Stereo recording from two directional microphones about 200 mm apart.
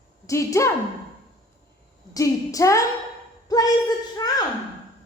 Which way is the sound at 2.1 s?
15° left (ahead or behind).